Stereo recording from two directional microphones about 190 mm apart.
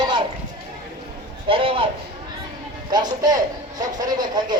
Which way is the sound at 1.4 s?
30° right (ahead or behind).